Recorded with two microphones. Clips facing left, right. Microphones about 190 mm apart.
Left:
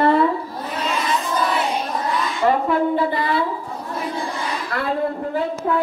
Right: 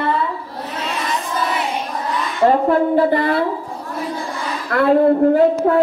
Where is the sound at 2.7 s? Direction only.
50° right (ahead or behind).